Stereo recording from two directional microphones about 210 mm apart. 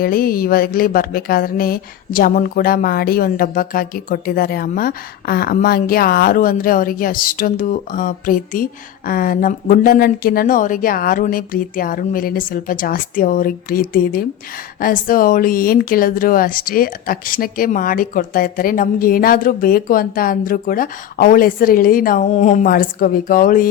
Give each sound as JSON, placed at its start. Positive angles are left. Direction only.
{"t": 0.0, "sound": "a woman's voice", "side_deg": 45}